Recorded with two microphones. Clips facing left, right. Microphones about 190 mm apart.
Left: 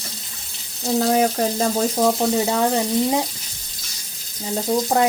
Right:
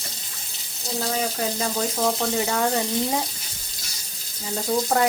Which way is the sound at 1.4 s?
50° left (ahead or behind).